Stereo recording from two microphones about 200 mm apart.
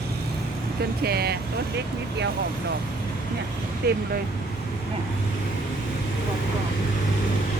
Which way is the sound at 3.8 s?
55° right (ahead or behind).